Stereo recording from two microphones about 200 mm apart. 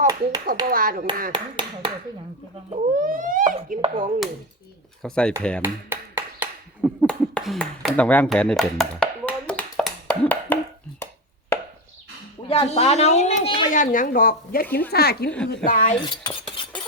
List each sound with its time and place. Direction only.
0.1 s speech: 20° right (ahead or behind)
0.7 s speech: 45° right (ahead or behind)
1.3 s speech: 25° right (ahead or behind)
3.0 s speech: 40° right (ahead or behind)
3.8 s speech: 25° right (ahead or behind)
5.0 s speech: 5° left (ahead or behind)
5.6 s a sound: 10° right (ahead or behind); by 11.6 s 15° left (ahead or behind)
12.5 s a woman's voice: 30° left (ahead or behind)
13.7 s speech: 40° left (ahead or behind)
16.0 s cutlery: 25° left (ahead or behind)